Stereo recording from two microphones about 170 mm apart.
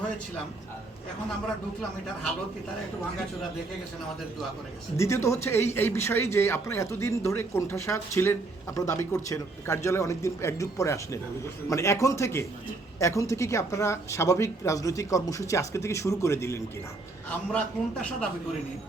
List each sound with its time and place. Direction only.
4.9 s a man's voice: 15° left (ahead or behind)